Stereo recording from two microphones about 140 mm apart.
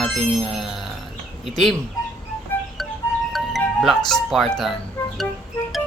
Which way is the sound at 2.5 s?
15° left (ahead or behind).